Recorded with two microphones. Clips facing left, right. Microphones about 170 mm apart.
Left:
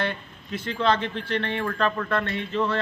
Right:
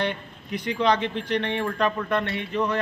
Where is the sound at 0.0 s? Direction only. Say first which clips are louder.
Right 1 dB; 15° right (ahead or behind).